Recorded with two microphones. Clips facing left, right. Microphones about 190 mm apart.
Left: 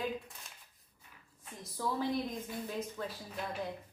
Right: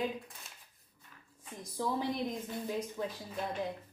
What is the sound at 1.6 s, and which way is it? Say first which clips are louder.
A woman's voice: right 1 dB; 15° right (ahead or behind).